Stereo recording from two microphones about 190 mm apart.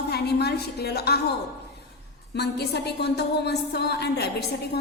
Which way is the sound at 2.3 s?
60° left (ahead or behind).